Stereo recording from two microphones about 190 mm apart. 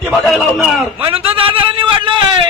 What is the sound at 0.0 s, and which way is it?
A man's voice, centre (ahead or behind).